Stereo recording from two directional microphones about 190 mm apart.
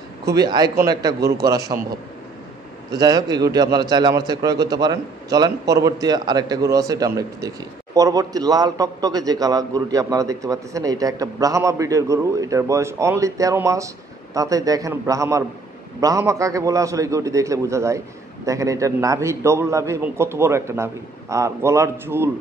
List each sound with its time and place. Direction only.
0.2 s a man's voice: 20° right (ahead or behind)
2.9 s a man's voice: 20° right (ahead or behind)